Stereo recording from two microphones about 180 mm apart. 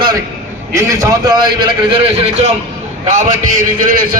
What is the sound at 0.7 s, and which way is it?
A man's voice, 20° right (ahead or behind).